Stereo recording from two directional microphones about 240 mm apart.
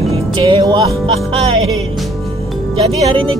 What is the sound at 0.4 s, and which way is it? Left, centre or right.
Music, centre.